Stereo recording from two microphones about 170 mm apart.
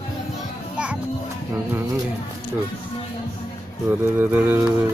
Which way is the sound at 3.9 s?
10° right (ahead or behind).